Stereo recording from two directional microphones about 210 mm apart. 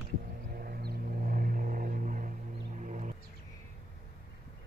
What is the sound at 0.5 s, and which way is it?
Vehicle, 45° right (ahead or behind).